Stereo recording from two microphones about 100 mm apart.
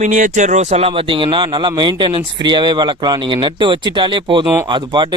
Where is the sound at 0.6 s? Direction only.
90° right; by 5.1 s 50° right (ahead or behind).